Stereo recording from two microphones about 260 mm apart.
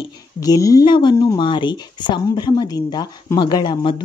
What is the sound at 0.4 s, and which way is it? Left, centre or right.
Speech, centre.